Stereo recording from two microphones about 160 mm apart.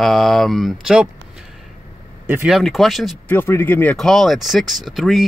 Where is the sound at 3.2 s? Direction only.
15° left (ahead or behind).